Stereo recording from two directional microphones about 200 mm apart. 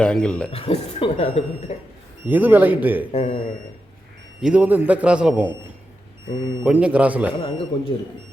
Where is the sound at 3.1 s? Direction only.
30° left (ahead or behind).